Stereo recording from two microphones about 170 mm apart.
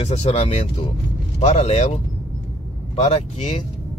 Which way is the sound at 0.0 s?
40° left (ahead or behind).